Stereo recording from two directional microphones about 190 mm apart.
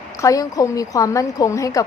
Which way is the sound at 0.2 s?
15° left (ahead or behind).